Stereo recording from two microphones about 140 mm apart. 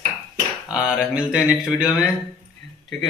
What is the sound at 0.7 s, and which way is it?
A man's voice, 5° right (ahead or behind).